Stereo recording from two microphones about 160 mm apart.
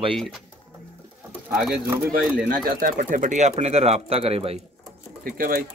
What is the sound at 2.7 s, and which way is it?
Speech, 60° right (ahead or behind).